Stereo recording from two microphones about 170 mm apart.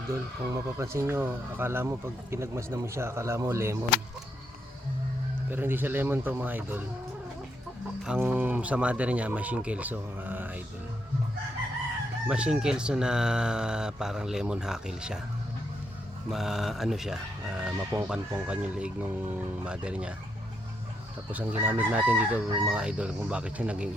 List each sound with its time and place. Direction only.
0.1 s speech: 20° right (ahead or behind)
5.5 s speech: 10° right (ahead or behind)
8.0 s speech: 10° right (ahead or behind)
12.3 s speech: 5° right (ahead or behind)
16.3 s speech: centre (ahead or behind)
21.3 s speech: 10° right (ahead or behind)